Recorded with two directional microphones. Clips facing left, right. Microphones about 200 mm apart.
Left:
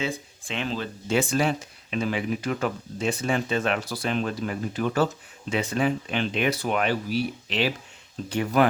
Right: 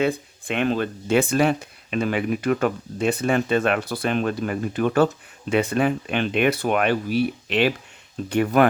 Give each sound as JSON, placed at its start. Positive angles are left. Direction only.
{"t": 0.0, "sound": "speech", "side_deg": -60}